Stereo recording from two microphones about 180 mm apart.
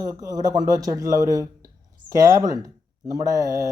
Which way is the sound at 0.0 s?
20° right (ahead or behind).